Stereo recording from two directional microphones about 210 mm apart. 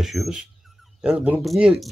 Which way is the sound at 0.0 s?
Centre (ahead or behind).